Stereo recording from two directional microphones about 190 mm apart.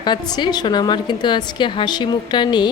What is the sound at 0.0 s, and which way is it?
A woman's voice, 20° left (ahead or behind).